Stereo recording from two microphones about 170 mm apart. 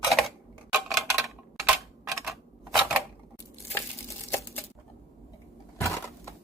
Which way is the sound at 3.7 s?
15° left (ahead or behind).